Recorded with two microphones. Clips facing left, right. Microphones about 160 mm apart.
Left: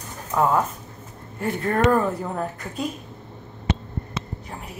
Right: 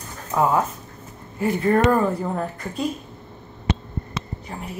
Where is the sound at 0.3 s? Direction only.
5° right (ahead or behind).